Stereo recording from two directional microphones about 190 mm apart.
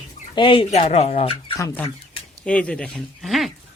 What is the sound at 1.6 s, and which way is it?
Speech, 15° left (ahead or behind).